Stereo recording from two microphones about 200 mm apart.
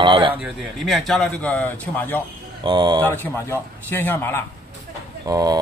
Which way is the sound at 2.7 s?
25° right (ahead or behind).